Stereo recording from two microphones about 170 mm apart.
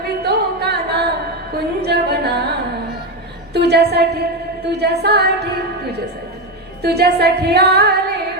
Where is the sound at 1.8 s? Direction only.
75° right (ahead or behind).